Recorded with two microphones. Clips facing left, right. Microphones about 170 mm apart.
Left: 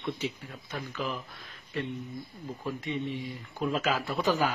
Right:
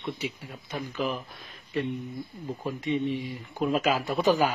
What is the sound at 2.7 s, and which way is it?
Speech, 15° right (ahead or behind).